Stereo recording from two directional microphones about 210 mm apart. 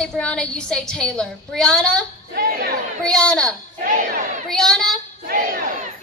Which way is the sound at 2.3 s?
50° right (ahead or behind).